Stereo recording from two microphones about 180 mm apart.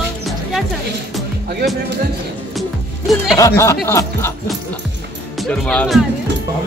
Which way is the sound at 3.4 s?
15° left (ahead or behind).